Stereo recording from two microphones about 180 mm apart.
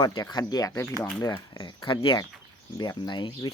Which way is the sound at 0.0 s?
20° left (ahead or behind).